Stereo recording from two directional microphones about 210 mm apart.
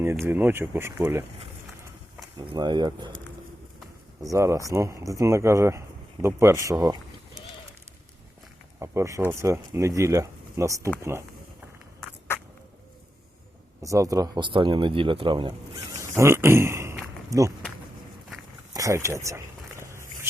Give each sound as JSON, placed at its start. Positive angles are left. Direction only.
{"t": 0.0, "sound": "speech", "side_deg": -10}
{"t": 2.4, "sound": "speech", "side_deg": -20}
{"t": 4.2, "sound": "speech", "side_deg": -15}
{"t": 8.8, "sound": "speech", "side_deg": -15}
{"t": 13.8, "sound": "speech", "side_deg": -15}
{"t": 16.1, "sound": "a sound", "side_deg": -10}
{"t": 18.7, "sound": "speech", "side_deg": -15}